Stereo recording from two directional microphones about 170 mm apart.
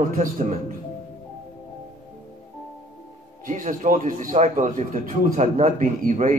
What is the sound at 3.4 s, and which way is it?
A man's voice, 50° right (ahead or behind).